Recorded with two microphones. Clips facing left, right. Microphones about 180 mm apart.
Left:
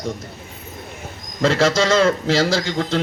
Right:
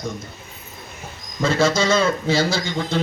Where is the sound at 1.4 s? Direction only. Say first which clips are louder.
Left 2 dB; 90° left.